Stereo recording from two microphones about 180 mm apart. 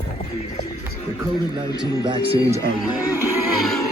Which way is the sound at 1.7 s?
20° left (ahead or behind).